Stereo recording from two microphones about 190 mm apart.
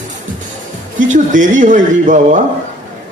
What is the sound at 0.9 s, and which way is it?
Speech, 45° right (ahead or behind).